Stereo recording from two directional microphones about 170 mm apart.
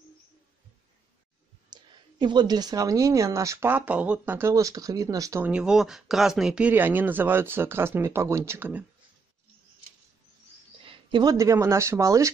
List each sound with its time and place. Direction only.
1.7 s a woman's voice: 25° right (ahead or behind)
5.5 s speech: 5° right (ahead or behind)
10.8 s speech: 30° right (ahead or behind)